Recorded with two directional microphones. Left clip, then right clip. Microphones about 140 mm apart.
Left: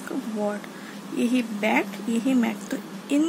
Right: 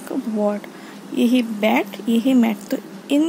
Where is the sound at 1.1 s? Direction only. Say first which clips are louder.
Right 6 dB; 40° right (ahead or behind).